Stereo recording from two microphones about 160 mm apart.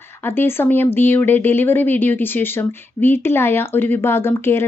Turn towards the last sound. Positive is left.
turn(degrees=15)  # may be behind; listen again after turning